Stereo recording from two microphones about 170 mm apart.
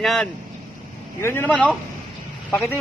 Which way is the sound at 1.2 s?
10° left (ahead or behind).